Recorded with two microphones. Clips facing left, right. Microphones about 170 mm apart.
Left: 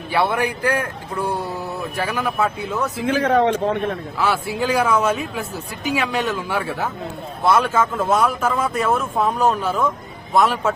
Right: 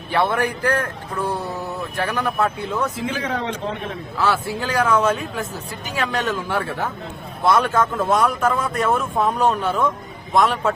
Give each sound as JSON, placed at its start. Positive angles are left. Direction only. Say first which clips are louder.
{"t": 0.1, "sound": "a man's voice", "louder": "even", "side_deg": 10}
{"t": 3.0, "sound": "a man's voice", "louder": "left 8 dB", "side_deg": 60}
{"t": 4.2, "sound": "a man's voice", "louder": "even", "side_deg": 10}